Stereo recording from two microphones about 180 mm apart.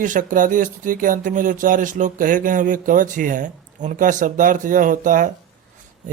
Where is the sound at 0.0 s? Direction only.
45° right (ahead or behind).